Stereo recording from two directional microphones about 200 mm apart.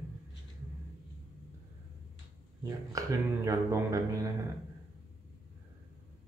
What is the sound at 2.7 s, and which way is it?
Speech, 15° right (ahead or behind).